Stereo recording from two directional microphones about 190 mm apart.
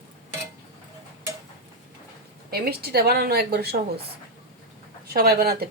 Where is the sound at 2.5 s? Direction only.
55° right (ahead or behind).